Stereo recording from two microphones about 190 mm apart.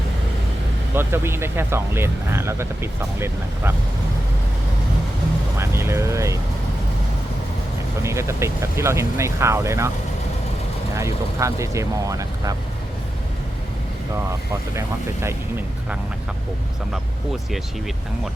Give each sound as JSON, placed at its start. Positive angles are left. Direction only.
{"t": 0.9, "sound": "speech", "side_deg": -10}
{"t": 5.5, "sound": "speech", "side_deg": -15}
{"t": 8.0, "sound": "speech", "side_deg": -15}
{"t": 10.9, "sound": "speech", "side_deg": -15}
{"t": 14.8, "sound": "speech", "side_deg": -15}